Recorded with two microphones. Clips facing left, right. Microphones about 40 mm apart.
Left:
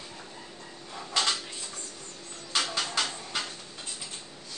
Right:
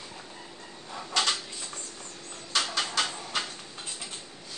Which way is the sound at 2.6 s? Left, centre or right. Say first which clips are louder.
Right 1 dB; centre.